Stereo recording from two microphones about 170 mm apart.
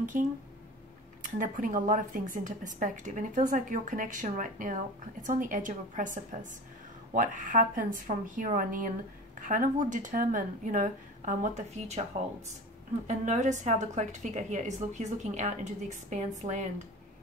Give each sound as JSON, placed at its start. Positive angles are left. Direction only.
{"t": 0.1, "sound": "speech", "side_deg": -55}
{"t": 13.0, "sound": "speech", "side_deg": -45}